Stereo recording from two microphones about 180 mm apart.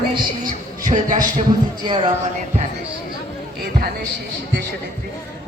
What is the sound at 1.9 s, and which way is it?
Speech, 25° right (ahead or behind).